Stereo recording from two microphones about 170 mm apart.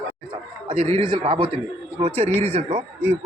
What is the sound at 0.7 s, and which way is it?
Speech, 35° right (ahead or behind).